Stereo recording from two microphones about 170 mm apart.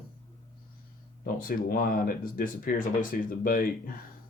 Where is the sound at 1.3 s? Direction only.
55° left (ahead or behind).